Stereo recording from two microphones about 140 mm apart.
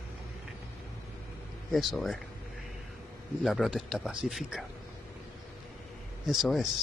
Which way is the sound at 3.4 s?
Centre (ahead or behind).